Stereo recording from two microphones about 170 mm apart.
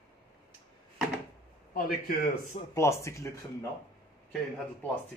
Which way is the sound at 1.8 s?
55° left (ahead or behind).